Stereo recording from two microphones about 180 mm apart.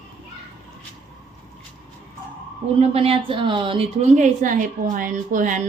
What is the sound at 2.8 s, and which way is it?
A woman's voice, 30° right (ahead or behind).